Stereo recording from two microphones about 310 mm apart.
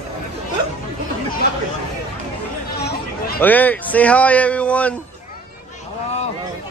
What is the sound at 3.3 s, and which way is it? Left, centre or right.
Speech, centre.